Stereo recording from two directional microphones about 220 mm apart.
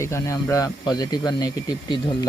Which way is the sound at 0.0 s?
10° left (ahead or behind).